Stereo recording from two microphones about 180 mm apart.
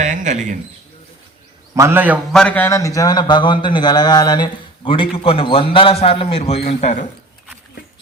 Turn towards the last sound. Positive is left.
turn(degrees=35)  # may be behind; listen again after turning